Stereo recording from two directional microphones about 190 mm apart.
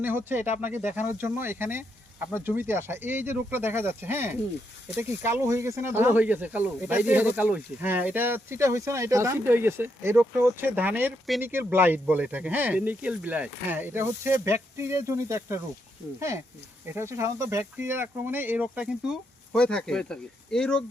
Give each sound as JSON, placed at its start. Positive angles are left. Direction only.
{"t": 0.3, "sound": "speech", "side_deg": -10}
{"t": 16.9, "sound": "speech", "side_deg": -15}